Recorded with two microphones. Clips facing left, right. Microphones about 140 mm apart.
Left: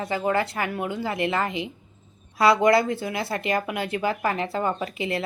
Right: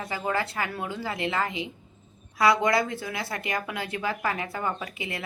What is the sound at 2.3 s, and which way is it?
A woman's voice, 25° left (ahead or behind).